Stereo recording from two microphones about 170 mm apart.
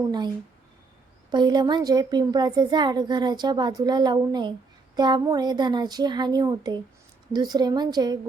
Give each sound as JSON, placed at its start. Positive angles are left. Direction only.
{"t": 1.3, "sound": "a woman's voice", "side_deg": -25}